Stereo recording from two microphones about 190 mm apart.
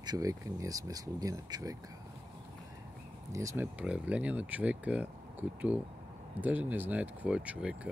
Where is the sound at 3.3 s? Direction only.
15° right (ahead or behind).